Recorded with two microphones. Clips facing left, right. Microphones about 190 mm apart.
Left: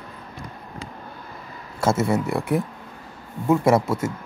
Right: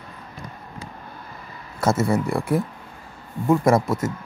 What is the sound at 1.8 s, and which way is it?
Speech, 25° left (ahead or behind).